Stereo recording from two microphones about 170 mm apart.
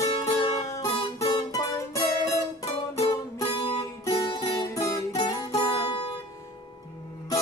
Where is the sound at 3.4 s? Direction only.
25° left (ahead or behind).